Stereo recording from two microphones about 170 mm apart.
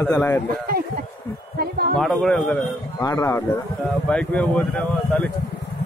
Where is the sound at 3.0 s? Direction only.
15° left (ahead or behind).